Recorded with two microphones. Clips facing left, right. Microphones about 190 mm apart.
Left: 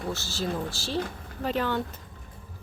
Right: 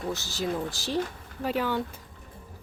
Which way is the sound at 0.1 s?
15° right (ahead or behind).